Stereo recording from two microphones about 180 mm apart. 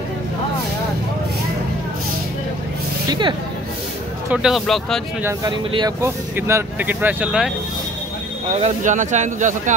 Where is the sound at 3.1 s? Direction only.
25° right (ahead or behind).